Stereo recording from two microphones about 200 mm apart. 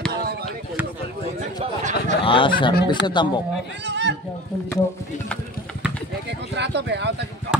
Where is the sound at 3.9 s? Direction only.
60° right (ahead or behind).